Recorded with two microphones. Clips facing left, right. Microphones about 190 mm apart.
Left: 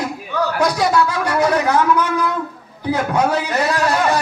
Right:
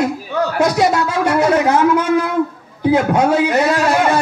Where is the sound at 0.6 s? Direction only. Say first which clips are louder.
Right 2 dB; 25° right (ahead or behind).